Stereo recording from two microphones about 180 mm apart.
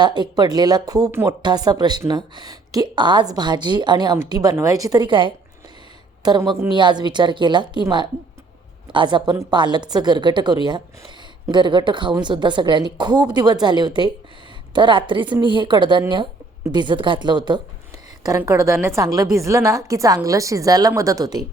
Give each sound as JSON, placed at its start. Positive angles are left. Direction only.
{"t": 0.2, "sound": "a woman's voice", "side_deg": -25}